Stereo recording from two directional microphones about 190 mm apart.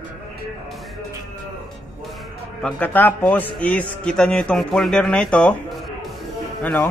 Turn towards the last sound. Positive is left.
turn(degrees=5)  # may be behind; listen again after turning